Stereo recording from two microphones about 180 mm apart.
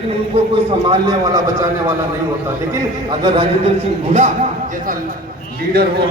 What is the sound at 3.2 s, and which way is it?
Speech, 30° right (ahead or behind).